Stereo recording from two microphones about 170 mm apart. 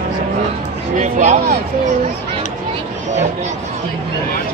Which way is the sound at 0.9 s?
45° right (ahead or behind).